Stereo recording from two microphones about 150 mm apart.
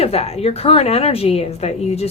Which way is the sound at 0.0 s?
45° left (ahead or behind).